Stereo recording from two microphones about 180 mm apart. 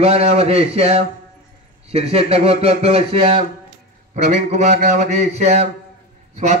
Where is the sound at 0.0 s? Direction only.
35° right (ahead or behind).